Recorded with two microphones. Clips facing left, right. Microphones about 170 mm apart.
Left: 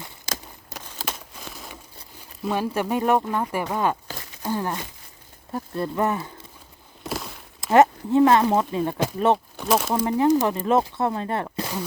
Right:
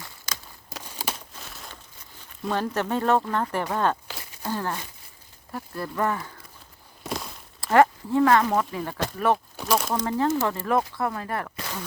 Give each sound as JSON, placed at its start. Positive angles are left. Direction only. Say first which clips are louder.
{"t": 0.9, "sound": "a sound", "louder": "even", "side_deg": -10}
{"t": 2.4, "sound": "speech", "louder": "left 2 dB", "side_deg": 10}
{"t": 7.0, "sound": "a sound", "louder": "left 1 dB", "side_deg": 0}
{"t": 7.6, "sound": "speech", "louder": "left 2 dB", "side_deg": 20}
{"t": 9.6, "sound": "speech", "louder": "left 3 dB", "side_deg": 5}
{"t": 9.9, "sound": "speech", "louder": "left 5 dB", "side_deg": 15}